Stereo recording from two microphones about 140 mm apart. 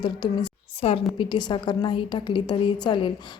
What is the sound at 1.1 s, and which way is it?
A woman's voice, 30° left (ahead or behind).